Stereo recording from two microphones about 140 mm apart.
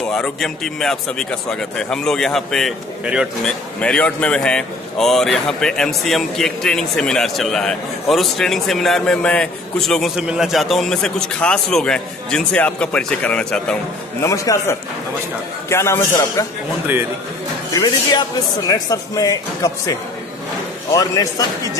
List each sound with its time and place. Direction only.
0.1 s speech: 5° left (ahead or behind)
3.8 s speech: 5° left (ahead or behind)
14.2 s speech: 20° left (ahead or behind)
16.8 s a man's voice: 15° right (ahead or behind)
17.6 s speech: 30° left (ahead or behind)